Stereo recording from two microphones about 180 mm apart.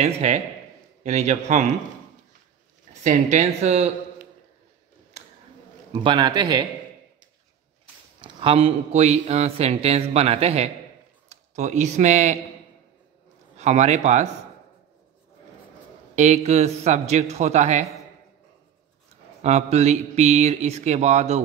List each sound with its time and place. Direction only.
0.0 s a man's voice: 35° right (ahead or behind)
2.9 s a man's voice: 40° right (ahead or behind)
6.0 s a man's voice: 25° right (ahead or behind)
8.2 s a man's voice: 30° right (ahead or behind)
13.6 s a man's voice: 40° right (ahead or behind)
16.2 s a man's voice: 40° right (ahead or behind)
19.4 s a man's voice: 40° right (ahead or behind)